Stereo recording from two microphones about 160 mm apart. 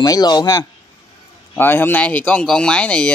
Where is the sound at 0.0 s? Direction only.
25° left (ahead or behind).